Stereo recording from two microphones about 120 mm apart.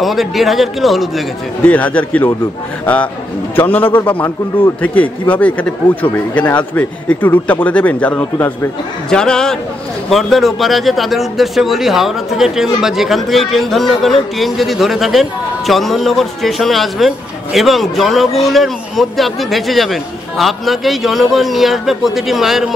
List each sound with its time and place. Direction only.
0.0 s a man's voice: centre (ahead or behind)
1.6 s a man's voice: 15° left (ahead or behind); by 22.8 s centre (ahead or behind)